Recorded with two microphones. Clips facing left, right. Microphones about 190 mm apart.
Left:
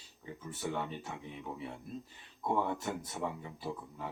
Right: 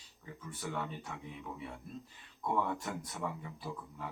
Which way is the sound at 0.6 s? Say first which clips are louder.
Left 3 dB; 25° left (ahead or behind).